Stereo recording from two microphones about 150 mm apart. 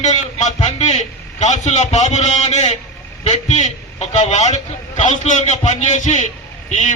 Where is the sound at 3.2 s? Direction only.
50° left (ahead or behind).